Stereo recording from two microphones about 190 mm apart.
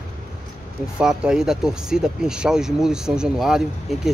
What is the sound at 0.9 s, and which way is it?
Speech, 5° right (ahead or behind).